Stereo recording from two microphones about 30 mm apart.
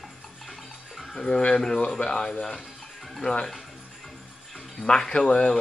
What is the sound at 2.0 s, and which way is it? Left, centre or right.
Speech, left.